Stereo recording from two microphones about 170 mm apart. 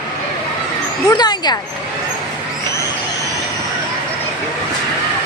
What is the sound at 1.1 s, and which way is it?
Speech, 25° left (ahead or behind).